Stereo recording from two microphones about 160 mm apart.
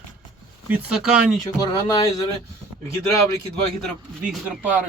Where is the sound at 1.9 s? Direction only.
25° left (ahead or behind).